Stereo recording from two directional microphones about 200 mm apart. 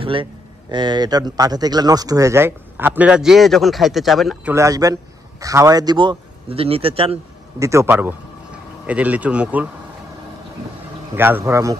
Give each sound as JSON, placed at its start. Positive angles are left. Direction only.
{"t": 0.0, "sound": "a man's voice", "side_deg": -25}
{"t": 4.6, "sound": "a man's voice", "side_deg": -15}
{"t": 7.6, "sound": "a man's voice", "side_deg": -15}
{"t": 11.1, "sound": "a man's voice", "side_deg": -10}